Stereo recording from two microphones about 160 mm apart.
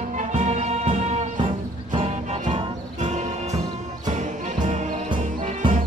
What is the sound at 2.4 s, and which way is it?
Music, 45° right (ahead or behind).